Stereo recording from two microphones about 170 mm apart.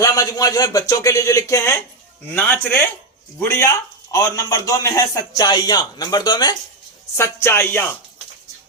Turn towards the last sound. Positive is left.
turn(degrees=15)  # may be behind; listen again after turning